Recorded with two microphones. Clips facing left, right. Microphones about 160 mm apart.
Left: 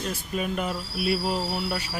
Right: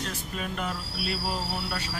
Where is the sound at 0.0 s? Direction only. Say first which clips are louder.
Left 5 dB; 10° left (ahead or behind).